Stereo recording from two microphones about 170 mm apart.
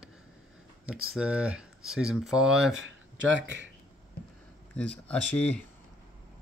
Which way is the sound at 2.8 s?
90° right.